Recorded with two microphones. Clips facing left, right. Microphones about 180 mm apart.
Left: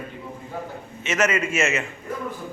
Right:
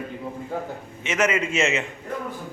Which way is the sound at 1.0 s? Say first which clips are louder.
Even; 15° right (ahead or behind).